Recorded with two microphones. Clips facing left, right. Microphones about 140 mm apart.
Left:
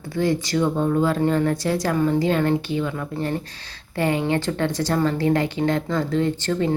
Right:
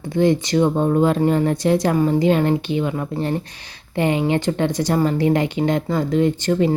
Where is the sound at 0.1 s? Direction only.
20° right (ahead or behind).